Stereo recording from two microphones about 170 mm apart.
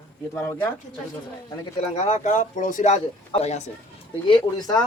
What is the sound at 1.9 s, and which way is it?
Speech, 45° left (ahead or behind).